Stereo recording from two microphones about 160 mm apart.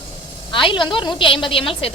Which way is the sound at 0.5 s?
30° left (ahead or behind).